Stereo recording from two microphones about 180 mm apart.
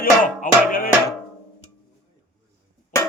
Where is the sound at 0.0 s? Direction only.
50° left (ahead or behind).